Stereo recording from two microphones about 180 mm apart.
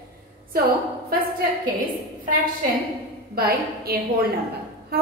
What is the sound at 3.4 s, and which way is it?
Speech, 60° right (ahead or behind).